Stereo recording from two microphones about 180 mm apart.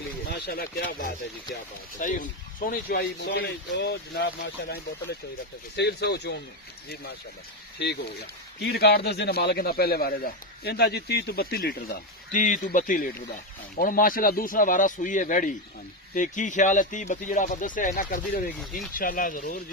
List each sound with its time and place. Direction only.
0.3 s a man's voice: 60° left (ahead or behind)
5.7 s speech: 70° left (ahead or behind)
7.8 s a man's voice: 65° left (ahead or behind); by 19.5 s 50° left (ahead or behind)